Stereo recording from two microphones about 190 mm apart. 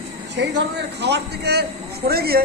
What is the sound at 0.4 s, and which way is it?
A man's voice, 65° right (ahead or behind).